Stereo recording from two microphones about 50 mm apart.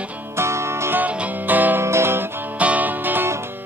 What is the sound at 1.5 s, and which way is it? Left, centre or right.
Music, right.